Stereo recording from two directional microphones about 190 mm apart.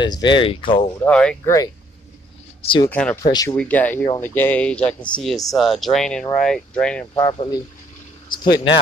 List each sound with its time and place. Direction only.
0.0 s speech: 25° left (ahead or behind)
1.0 s speech: 5° left (ahead or behind)
2.6 s speech: 25° left (ahead or behind)
2.9 s speech: 5° left (ahead or behind)
3.2 s speech: 20° left (ahead or behind)
3.5 s speech: 10° left (ahead or behind)
7.2 s speech: 25° left (ahead or behind)
8.3 s a sound: 25° left (ahead or behind)